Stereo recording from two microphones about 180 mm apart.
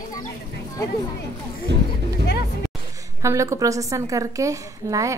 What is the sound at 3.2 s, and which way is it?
A woman's voice, 15° right (ahead or behind).